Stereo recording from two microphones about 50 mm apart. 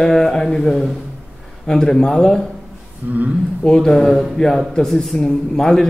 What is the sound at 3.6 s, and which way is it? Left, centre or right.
A man's voice, centre.